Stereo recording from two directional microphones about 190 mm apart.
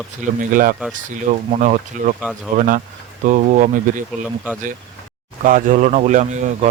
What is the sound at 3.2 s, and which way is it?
Speech, 40° right (ahead or behind).